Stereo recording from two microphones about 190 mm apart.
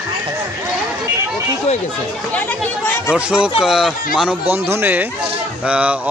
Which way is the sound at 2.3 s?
10° left (ahead or behind).